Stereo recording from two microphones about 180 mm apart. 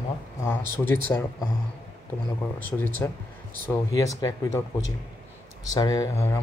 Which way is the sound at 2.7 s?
10° left (ahead or behind).